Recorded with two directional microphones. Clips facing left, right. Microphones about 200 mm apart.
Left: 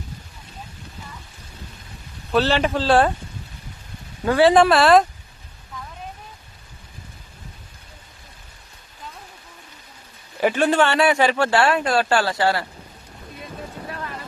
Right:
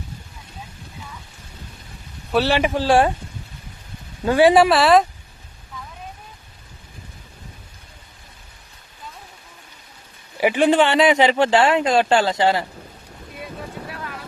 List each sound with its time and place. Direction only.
2.3 s speech: 15° right (ahead or behind)
4.3 s speech: 15° right (ahead or behind)
10.4 s speech: 15° right (ahead or behind)